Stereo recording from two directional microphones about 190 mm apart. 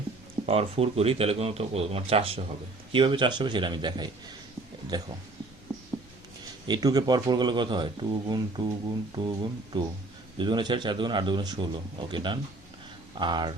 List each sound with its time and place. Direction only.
0.4 s speech: 30° right (ahead or behind)
6.7 s speech: 20° right (ahead or behind)